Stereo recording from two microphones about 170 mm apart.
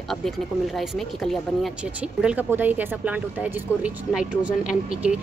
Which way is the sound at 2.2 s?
10° right (ahead or behind).